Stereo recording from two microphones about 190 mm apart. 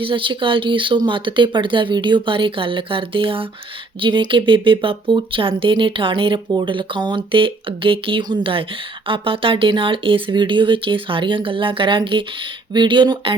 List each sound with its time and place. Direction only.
0.0 s speech: 25° right (ahead or behind)